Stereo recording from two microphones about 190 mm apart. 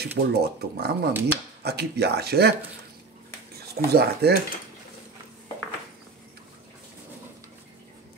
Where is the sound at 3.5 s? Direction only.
55° right (ahead or behind).